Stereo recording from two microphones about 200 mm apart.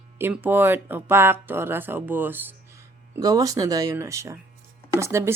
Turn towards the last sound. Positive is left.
turn(degrees=-15)  # may be behind; listen again after turning